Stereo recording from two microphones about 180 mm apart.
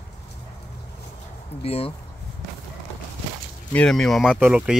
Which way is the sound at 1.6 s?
35° left (ahead or behind).